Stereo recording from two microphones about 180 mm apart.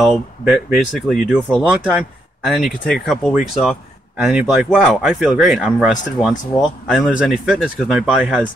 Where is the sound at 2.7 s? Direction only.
50° left (ahead or behind).